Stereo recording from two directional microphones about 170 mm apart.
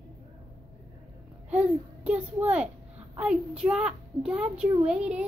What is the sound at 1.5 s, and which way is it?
A child's voice, 10° right (ahead or behind).